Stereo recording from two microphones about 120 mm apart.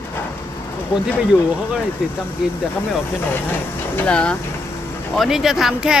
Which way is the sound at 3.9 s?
10° left (ahead or behind).